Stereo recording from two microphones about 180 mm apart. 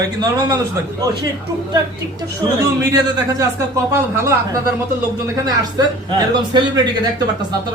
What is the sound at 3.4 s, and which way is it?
Speech, 15° right (ahead or behind).